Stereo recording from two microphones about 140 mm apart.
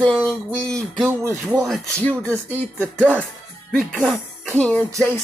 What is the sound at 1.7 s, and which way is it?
Speech, 5° left (ahead or behind).